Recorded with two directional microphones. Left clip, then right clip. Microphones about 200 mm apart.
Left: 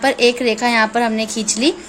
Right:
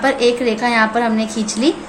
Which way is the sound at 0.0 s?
50° left (ahead or behind).